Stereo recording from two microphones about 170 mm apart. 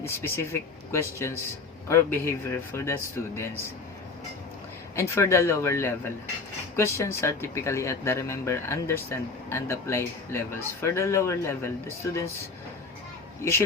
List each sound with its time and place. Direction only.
0.0 s speech: 15° left (ahead or behind)
4.9 s speech: 15° left (ahead or behind)
13.4 s speech: 15° left (ahead or behind)